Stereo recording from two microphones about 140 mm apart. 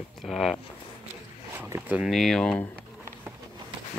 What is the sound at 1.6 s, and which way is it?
Speech, 15° right (ahead or behind).